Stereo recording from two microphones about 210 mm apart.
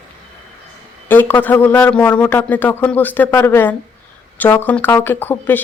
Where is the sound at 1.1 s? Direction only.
10° left (ahead or behind).